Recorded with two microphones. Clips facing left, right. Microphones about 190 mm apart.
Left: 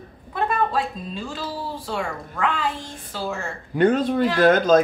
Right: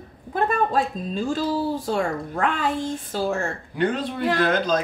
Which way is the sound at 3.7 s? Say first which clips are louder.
Left 7 dB; 45° left (ahead or behind).